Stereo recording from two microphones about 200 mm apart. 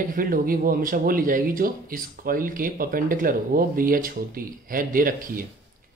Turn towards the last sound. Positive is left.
turn(degrees=-45)  # may be behind; listen again after turning